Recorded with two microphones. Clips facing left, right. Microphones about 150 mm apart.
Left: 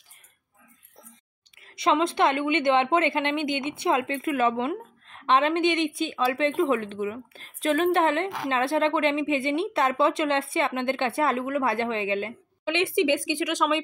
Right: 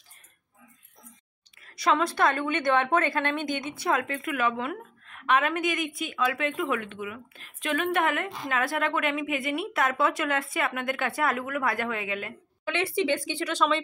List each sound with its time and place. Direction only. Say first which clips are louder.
1.6 s a woman's voice: left 2 dB; 25° left (ahead or behind)